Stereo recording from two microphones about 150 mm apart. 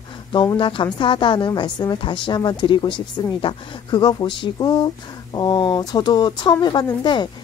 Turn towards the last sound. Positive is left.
turn(degrees=30)  # may be behind; listen again after turning